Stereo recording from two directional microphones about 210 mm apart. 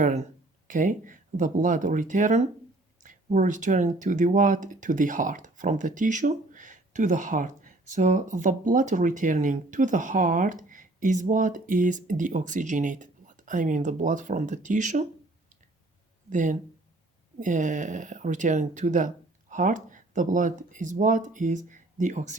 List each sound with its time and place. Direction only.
0.0 s speech: 35° right (ahead or behind)
16.3 s speech: 35° right (ahead or behind)